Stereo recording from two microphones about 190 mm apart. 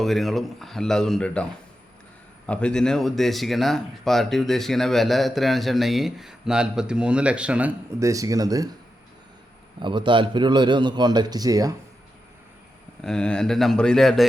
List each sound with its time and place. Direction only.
0.0 s speech: centre (ahead or behind)
2.5 s speech: 5° left (ahead or behind); by 8.7 s 20° right (ahead or behind)
9.8 s a man's voice: 25° right (ahead or behind)
13.0 s speech: 5° left (ahead or behind)